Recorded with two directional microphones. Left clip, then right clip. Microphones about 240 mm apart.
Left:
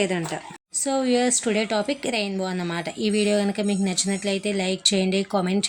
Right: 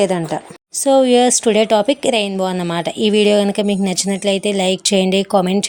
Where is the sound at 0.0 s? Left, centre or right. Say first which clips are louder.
Right 8 dB; right.